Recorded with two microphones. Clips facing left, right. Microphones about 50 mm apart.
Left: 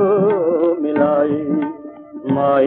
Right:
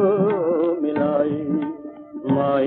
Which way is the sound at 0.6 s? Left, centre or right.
Centre.